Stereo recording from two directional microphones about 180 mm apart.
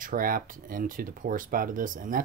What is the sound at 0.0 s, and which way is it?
Speech, 50° right (ahead or behind).